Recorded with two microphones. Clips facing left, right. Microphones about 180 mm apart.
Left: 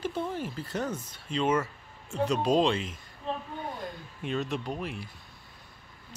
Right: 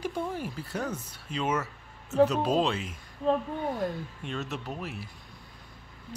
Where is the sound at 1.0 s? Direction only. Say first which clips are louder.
Left 3 dB; 10° right (ahead or behind).